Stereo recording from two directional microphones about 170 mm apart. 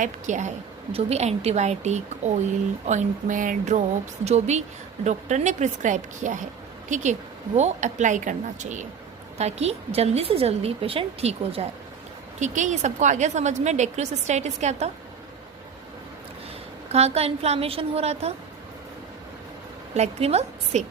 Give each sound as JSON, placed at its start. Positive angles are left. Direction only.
{"t": 0.0, "sound": "a woman's voice", "side_deg": -45}
{"t": 16.9, "sound": "a woman's voice", "side_deg": -40}
{"t": 20.0, "sound": "a woman's voice", "side_deg": -40}